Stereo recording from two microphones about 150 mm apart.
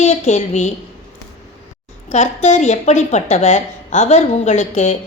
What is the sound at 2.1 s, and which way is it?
A woman's voice, 50° left (ahead or behind).